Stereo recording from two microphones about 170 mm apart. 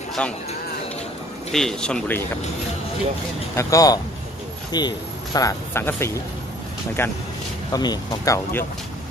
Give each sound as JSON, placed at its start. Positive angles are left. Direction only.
{"t": 0.2, "sound": "speech", "side_deg": 5}
{"t": 1.5, "sound": "speech", "side_deg": 5}
{"t": 3.5, "sound": "speech", "side_deg": 20}